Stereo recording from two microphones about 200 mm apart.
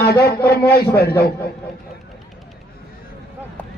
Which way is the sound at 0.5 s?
50° left (ahead or behind).